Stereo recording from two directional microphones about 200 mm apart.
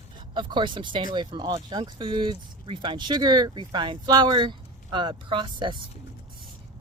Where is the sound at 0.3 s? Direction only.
25° right (ahead or behind).